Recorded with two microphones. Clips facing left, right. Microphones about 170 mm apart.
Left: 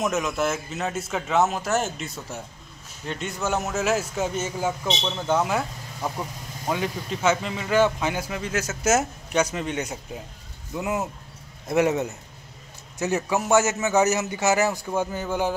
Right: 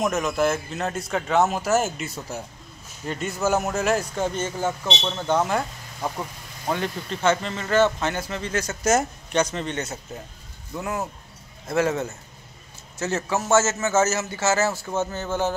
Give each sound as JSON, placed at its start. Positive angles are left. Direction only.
{"t": 0.0, "sound": "a man's voice", "side_deg": 0}
{"t": 5.9, "sound": "speech", "side_deg": -10}
{"t": 6.7, "sound": "speech", "side_deg": 5}